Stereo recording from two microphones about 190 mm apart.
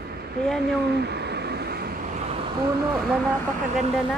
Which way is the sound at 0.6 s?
60° right (ahead or behind).